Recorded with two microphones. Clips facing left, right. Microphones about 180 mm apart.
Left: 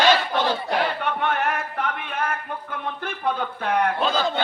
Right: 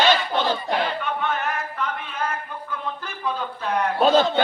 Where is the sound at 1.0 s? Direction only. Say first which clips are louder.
Left 2 dB; 60° left (ahead or behind).